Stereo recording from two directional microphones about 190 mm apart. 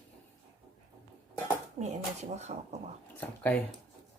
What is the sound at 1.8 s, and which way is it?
Speech, 35° right (ahead or behind).